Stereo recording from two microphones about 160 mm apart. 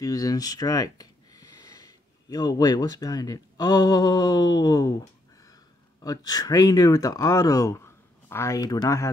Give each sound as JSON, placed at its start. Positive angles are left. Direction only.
{"t": 0.0, "sound": "speech", "side_deg": 20}